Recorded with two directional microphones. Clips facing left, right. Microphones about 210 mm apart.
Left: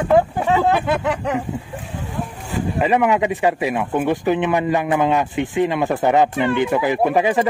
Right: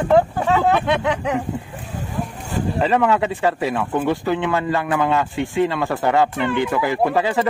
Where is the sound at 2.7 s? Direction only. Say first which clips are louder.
Left 1 dB; 15° left (ahead or behind).